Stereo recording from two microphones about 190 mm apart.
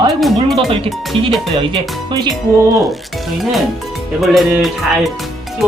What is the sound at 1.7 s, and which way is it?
Music, 20° right (ahead or behind).